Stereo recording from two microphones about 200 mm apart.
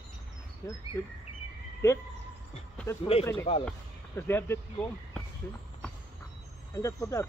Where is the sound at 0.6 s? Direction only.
15° left (ahead or behind).